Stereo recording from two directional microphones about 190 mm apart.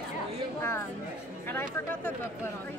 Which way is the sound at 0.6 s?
15° left (ahead or behind).